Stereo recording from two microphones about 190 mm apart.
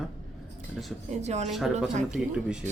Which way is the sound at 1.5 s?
Centre (ahead or behind).